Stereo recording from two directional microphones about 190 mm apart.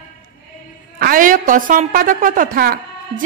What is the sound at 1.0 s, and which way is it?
A woman's voice, 45° right (ahead or behind).